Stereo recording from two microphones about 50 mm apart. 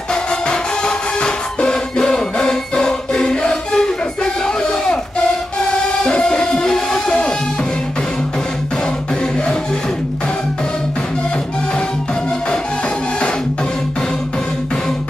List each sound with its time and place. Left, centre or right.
0.1 s music: centre